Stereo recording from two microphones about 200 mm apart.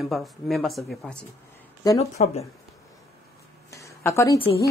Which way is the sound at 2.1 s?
30° left (ahead or behind).